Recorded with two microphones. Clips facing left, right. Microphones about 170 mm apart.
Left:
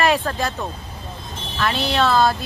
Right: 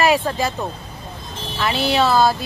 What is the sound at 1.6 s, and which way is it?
Speech, 5° right (ahead or behind).